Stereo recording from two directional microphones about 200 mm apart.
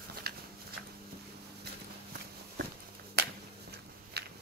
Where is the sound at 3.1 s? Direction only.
55° right (ahead or behind).